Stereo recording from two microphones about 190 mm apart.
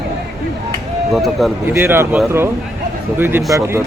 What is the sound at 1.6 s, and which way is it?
A man's voice, 10° right (ahead or behind).